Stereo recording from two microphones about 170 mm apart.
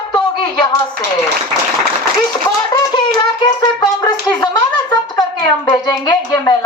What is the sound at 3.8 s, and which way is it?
Music, 25° left (ahead or behind).